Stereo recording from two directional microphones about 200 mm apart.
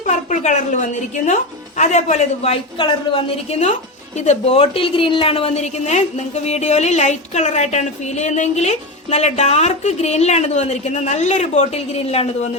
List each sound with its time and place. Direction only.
0.0 s a woman's voice: 35° left (ahead or behind)